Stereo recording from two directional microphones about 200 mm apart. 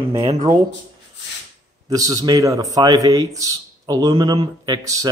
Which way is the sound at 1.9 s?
15° right (ahead or behind).